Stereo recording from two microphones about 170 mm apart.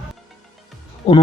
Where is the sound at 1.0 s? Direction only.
40° left (ahead or behind).